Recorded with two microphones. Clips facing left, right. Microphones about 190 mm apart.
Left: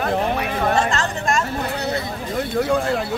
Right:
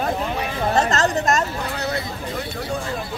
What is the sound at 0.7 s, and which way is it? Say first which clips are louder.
Speech: right 2 dB; 40° right (ahead or behind).